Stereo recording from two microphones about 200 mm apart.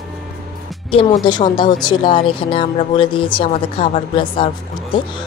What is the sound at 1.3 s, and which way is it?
Speech, 20° left (ahead or behind).